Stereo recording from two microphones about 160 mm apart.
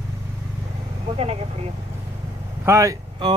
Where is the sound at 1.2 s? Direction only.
40° right (ahead or behind).